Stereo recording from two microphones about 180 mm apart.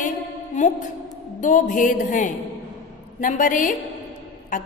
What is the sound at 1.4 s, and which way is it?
Speech, 45° left (ahead or behind).